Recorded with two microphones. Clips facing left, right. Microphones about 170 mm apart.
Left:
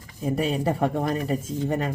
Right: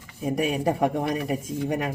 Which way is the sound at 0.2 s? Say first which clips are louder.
Even; 15° right (ahead or behind).